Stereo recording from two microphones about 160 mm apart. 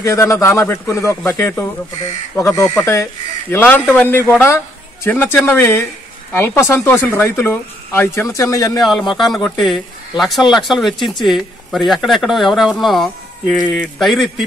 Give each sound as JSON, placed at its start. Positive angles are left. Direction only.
{"t": 0.0, "sound": "speech", "side_deg": 15}
{"t": 8.8, "sound": "speech", "side_deg": 0}